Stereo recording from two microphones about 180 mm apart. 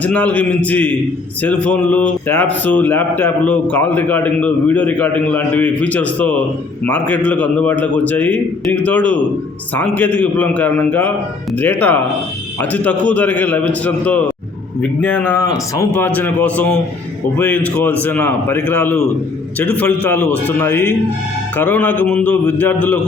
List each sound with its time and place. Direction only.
0.0 s speech: 10° left (ahead or behind)